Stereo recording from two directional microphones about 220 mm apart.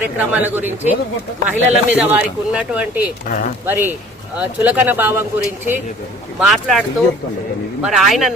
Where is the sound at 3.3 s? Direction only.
35° left (ahead or behind).